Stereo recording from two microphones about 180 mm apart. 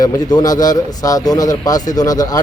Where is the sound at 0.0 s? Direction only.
20° left (ahead or behind).